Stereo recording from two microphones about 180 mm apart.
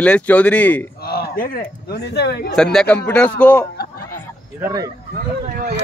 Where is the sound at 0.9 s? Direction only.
60° left (ahead or behind).